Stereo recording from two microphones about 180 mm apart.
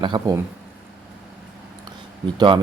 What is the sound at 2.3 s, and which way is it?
Speech, 25° right (ahead or behind).